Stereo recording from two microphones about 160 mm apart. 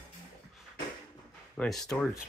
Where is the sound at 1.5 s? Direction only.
5° left (ahead or behind).